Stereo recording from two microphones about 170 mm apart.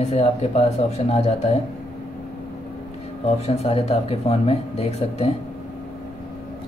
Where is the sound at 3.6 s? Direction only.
35° left (ahead or behind).